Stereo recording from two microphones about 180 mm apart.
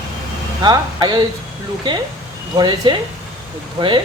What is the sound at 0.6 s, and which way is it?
A man's voice, 25° right (ahead or behind).